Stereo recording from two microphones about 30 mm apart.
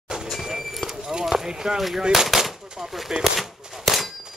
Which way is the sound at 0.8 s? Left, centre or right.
Left.